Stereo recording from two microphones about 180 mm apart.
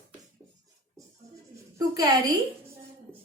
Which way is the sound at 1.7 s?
20° right (ahead or behind).